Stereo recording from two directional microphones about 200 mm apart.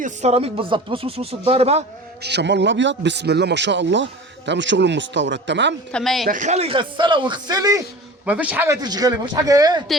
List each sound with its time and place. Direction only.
0.0 s a man's voice: 35° right (ahead or behind)
2.2 s a man's voice: 60° right (ahead or behind)
5.9 s speech: centre (ahead or behind)
6.2 s a man's voice: 40° right (ahead or behind); by 7.8 s 20° right (ahead or behind)
8.2 s a man's voice: 5° right (ahead or behind)